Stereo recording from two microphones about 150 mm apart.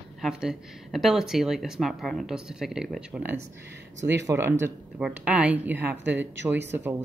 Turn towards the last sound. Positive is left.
turn(degrees=-15)  # may be behind; listen again after turning